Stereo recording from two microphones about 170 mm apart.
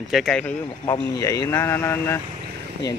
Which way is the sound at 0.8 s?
25° left (ahead or behind).